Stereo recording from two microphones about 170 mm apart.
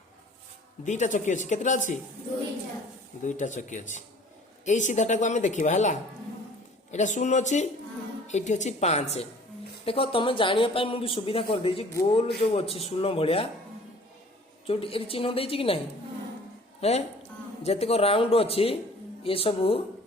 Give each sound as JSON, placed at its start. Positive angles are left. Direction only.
{"t": 0.9, "sound": "a woman's voice", "side_deg": 45}
{"t": 3.2, "sound": "a woman's voice", "side_deg": 45}
{"t": 14.7, "sound": "a woman's voice", "side_deg": 30}
{"t": 16.8, "sound": "a woman's voice", "side_deg": 40}